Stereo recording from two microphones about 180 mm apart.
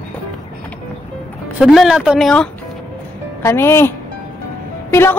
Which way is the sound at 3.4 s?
15° left (ahead or behind).